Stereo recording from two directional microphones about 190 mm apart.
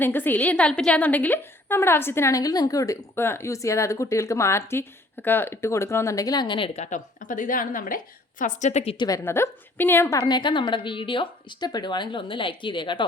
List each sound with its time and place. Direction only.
0.0 s a woman's voice: 10° left (ahead or behind); by 9.0 s 30° left (ahead or behind)
9.0 s a woman's voice: 15° left (ahead or behind)
10.2 s speech: 25° left (ahead or behind)